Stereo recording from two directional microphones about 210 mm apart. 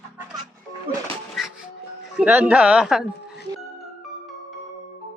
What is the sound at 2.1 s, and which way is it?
Speech, 5° right (ahead or behind).